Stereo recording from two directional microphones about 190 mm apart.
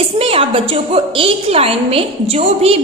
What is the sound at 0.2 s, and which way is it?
A woman's voice, 30° right (ahead or behind).